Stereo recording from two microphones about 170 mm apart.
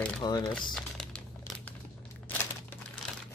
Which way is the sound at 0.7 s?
5° left (ahead or behind).